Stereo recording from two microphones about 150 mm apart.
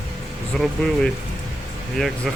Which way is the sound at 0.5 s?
Centre (ahead or behind).